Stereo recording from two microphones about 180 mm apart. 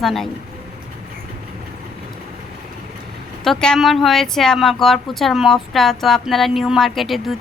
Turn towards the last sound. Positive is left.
turn(degrees=0)  # may be behind; listen again after turning